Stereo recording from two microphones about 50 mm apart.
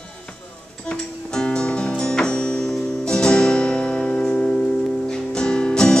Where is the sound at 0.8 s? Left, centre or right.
Centre.